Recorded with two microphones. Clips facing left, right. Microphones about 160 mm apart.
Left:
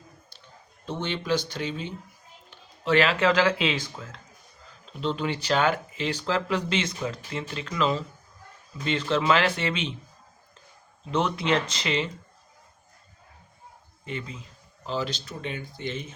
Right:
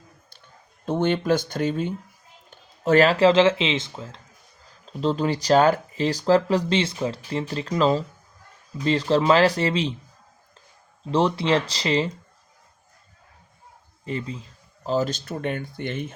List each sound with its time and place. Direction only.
0.9 s speech: 50° right (ahead or behind); by 4.2 s 25° right (ahead or behind)
4.9 s speech: 40° right (ahead or behind)
11.1 s speech: 30° right (ahead or behind)
14.0 s speech: 35° right (ahead or behind); by 16.1 s 60° right (ahead or behind)